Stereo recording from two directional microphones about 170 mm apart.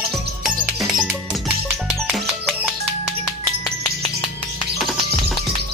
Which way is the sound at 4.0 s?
30° left (ahead or behind).